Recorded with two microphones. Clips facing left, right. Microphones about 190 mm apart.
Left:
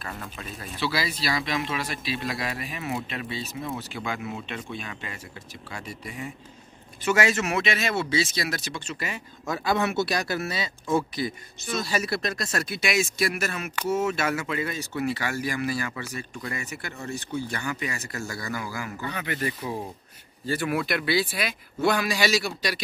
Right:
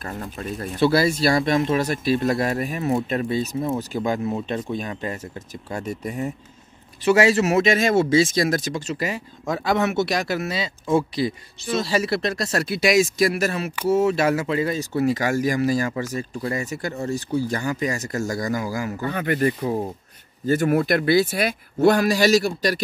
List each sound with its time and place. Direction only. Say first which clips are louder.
0.0 s speech: right 6 dB; 40° right (ahead or behind)
0.6 s speech: right 10 dB; 50° right (ahead or behind)
9.5 s speech: right 4 dB; 20° right (ahead or behind); by 22.8 s 45° right (ahead or behind)